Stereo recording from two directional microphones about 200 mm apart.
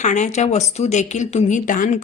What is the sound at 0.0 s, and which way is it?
Speech, 35° left (ahead or behind).